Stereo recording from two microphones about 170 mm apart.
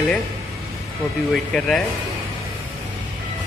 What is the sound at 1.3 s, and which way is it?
Speech, centre (ahead or behind).